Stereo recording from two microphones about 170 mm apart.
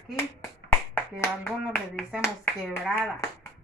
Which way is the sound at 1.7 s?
Centre (ahead or behind).